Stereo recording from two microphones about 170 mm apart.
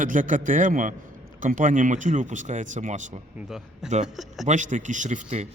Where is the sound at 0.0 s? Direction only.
50° right (ahead or behind).